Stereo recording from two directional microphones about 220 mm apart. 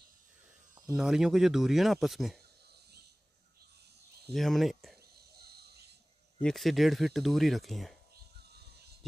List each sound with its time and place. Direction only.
0.9 s speech: 5° right (ahead or behind)
4.3 s speech: centre (ahead or behind)
5.4 s a sound: 45° right (ahead or behind)
6.4 s speech: centre (ahead or behind)